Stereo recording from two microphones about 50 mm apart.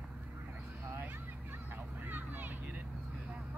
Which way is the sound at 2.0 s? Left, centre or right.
Right.